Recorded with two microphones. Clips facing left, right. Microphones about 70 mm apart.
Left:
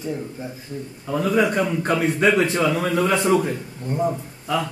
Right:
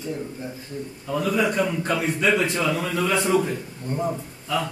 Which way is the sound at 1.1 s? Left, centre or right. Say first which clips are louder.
Left 3 dB; left.